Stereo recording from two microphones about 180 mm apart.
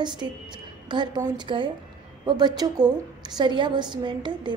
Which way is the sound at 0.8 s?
25° right (ahead or behind).